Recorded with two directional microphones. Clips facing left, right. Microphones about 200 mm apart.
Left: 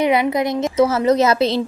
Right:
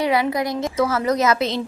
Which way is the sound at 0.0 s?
20° left (ahead or behind).